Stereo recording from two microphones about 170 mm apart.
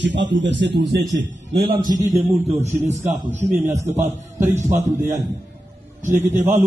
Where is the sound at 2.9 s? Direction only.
40° right (ahead or behind).